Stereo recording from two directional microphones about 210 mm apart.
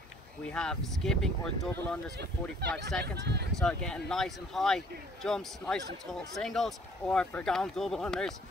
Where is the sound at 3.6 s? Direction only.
5° left (ahead or behind).